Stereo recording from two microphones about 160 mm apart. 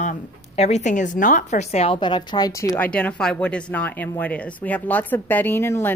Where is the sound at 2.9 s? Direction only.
10° left (ahead or behind).